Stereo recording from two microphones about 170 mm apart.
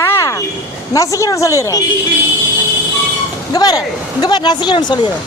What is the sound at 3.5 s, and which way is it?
A woman's voice, 25° left (ahead or behind).